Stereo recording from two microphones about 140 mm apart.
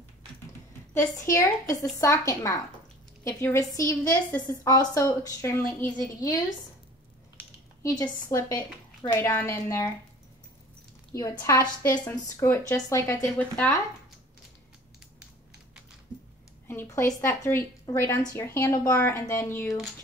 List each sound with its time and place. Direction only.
1.3 s a woman's voice: 20° left (ahead or behind)
4.5 s a woman's voice: 25° left (ahead or behind)
7.8 s a woman's voice: 25° left (ahead or behind)
11.1 s a woman's voice: 20° left (ahead or behind)
11.9 s speech: 30° left (ahead or behind)
12.4 s speech: 20° left (ahead or behind)
16.6 s a woman's voice: 20° left (ahead or behind)